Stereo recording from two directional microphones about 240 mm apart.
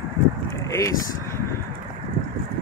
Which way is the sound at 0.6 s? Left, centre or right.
Centre.